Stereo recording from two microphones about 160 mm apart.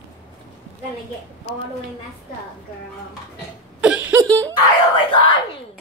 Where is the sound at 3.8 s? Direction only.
5° right (ahead or behind).